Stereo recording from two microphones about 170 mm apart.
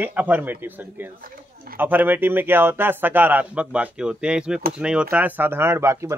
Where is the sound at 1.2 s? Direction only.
60° right (ahead or behind).